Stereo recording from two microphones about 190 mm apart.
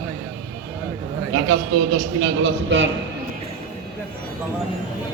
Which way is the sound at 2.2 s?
80° right.